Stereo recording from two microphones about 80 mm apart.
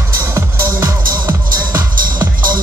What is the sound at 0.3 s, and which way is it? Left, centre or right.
Music, right.